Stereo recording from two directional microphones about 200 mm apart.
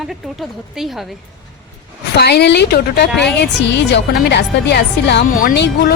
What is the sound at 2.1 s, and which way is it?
A woman's voice, 55° left (ahead or behind).